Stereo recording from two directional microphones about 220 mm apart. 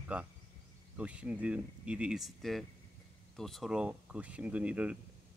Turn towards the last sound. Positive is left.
turn(degrees=-5)  # may be behind; listen again after turning